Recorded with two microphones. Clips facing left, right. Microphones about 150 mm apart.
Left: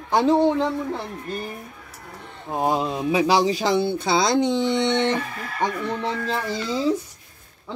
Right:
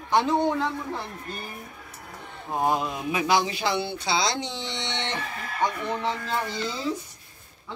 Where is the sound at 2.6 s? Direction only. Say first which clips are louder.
Left 3 dB; 30° left (ahead or behind); by 5.2 s 55° left (ahead or behind).